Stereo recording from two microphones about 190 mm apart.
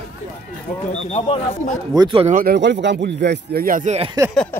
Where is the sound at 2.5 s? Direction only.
65° right (ahead or behind); by 4.1 s 35° right (ahead or behind).